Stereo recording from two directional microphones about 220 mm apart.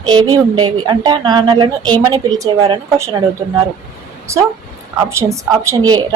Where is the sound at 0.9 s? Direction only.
20° right (ahead or behind).